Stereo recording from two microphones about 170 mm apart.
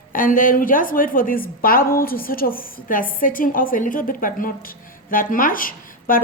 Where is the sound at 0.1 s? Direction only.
55° left (ahead or behind).